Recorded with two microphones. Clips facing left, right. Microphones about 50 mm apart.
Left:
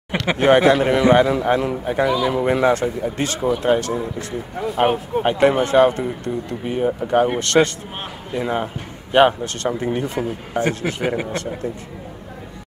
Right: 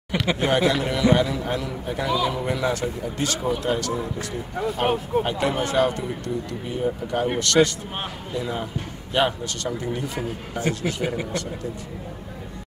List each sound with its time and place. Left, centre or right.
0.3 s speech: left
1.3 s a man's voice: left
1.7 s speech: left
2.0 s speech: centre
2.3 s speech: left
4.8 s speech: centre
5.2 s speech: left